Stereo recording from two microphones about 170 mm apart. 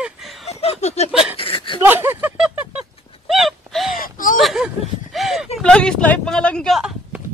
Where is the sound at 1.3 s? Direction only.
30° left (ahead or behind).